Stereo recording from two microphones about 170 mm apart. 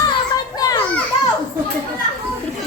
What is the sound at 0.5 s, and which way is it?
Children playing, 20° left (ahead or behind).